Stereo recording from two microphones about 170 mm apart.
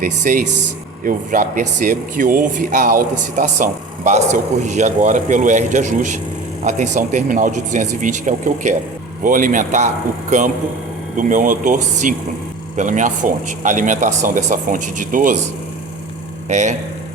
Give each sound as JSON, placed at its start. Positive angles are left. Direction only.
{"t": 0.2, "sound": "speech", "side_deg": -50}
{"t": 16.5, "sound": "speech", "side_deg": -45}